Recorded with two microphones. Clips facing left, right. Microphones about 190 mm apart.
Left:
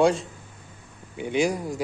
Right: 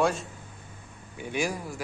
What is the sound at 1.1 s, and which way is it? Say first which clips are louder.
Speech: left 6 dB; 15° left (ahead or behind).